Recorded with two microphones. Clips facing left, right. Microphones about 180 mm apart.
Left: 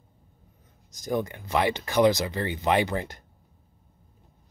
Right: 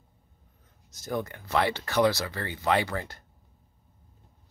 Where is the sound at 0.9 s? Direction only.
15° left (ahead or behind).